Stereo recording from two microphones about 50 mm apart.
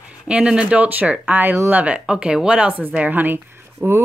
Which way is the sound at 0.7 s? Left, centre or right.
Right.